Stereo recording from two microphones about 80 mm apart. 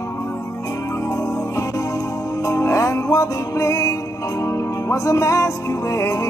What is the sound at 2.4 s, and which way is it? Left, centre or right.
Music, left.